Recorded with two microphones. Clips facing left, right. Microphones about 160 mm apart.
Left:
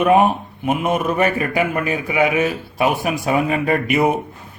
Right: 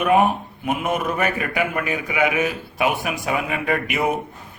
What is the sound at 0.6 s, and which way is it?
A man's voice, 30° left (ahead or behind).